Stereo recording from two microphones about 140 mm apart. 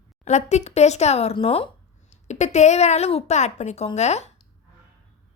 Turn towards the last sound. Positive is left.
turn(degrees=50)  # may be behind; listen again after turning